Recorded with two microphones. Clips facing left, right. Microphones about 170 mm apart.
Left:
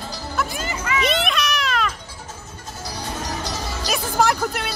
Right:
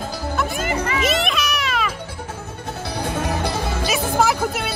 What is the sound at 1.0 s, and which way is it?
Music, centre (ahead or behind).